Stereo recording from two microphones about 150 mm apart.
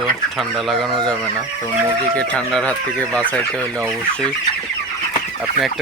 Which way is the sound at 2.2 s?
5° left (ahead or behind).